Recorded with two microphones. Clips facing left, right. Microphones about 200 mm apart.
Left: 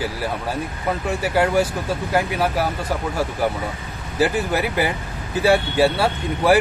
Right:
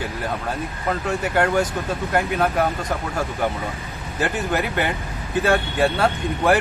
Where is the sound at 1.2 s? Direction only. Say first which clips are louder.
Left 2 dB; 5° left (ahead or behind).